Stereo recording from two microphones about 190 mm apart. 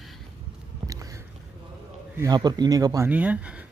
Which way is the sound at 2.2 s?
20° right (ahead or behind).